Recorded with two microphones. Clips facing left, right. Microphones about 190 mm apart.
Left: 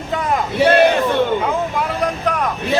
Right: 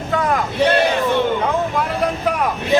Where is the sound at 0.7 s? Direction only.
55° left (ahead or behind).